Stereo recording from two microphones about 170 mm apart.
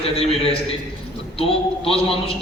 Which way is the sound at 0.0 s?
35° left (ahead or behind).